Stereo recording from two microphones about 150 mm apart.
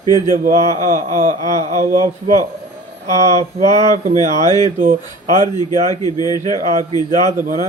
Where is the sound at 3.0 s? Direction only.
30° left (ahead or behind).